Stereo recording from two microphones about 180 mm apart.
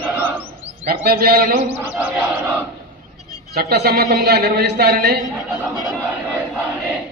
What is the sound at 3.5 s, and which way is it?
A man's voice, 65° right (ahead or behind).